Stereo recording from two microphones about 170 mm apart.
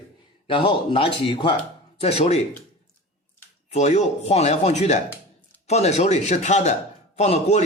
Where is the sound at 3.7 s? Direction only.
40° left (ahead or behind).